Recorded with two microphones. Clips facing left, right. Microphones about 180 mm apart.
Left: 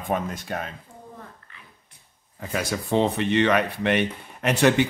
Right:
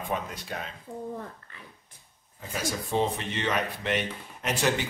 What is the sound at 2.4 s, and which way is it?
Speech, 70° left (ahead or behind).